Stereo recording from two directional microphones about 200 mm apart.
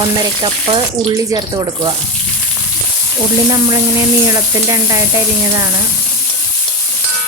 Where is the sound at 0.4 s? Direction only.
20° right (ahead or behind).